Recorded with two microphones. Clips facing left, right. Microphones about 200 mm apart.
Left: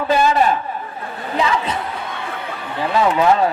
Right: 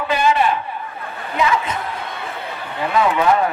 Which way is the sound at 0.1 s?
40° left (ahead or behind).